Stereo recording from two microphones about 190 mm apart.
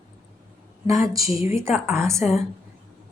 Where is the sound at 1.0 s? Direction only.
15° right (ahead or behind).